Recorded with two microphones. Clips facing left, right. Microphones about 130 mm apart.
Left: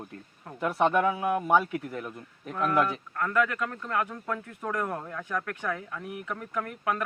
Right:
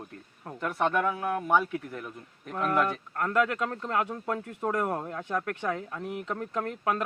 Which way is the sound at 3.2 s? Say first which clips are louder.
Right 1 dB; 30° right (ahead or behind).